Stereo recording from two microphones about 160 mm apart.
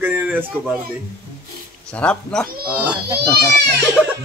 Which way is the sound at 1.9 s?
5° left (ahead or behind).